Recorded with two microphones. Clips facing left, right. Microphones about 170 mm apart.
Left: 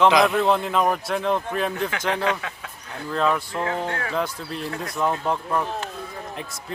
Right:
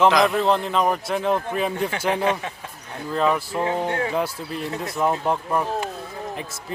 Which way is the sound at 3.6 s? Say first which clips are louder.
Right 3 dB; 20° right (ahead or behind).